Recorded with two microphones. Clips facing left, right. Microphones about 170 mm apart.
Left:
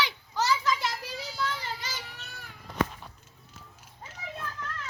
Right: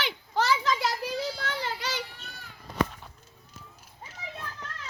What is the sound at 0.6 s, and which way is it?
Children playing, 40° right (ahead or behind).